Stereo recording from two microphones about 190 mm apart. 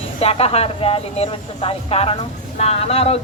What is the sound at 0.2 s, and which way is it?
A man's voice, 30° left (ahead or behind).